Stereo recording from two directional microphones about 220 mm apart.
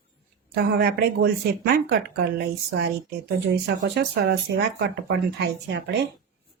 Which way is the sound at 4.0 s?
50° right (ahead or behind).